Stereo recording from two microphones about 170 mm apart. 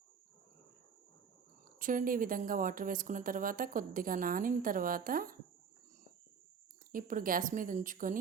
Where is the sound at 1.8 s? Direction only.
55° right (ahead or behind).